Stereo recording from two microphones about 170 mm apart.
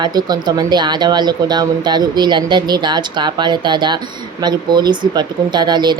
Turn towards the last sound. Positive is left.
turn(degrees=-25)  # may be behind; listen again after turning